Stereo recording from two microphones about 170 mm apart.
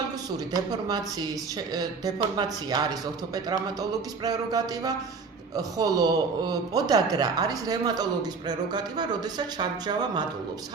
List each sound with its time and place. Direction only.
0.7 s a man's voice: 25° right (ahead or behind)